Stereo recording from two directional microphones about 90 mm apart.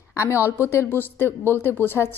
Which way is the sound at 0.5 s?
30° left (ahead or behind).